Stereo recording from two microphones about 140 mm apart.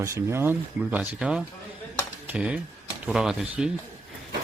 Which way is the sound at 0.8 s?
5° right (ahead or behind).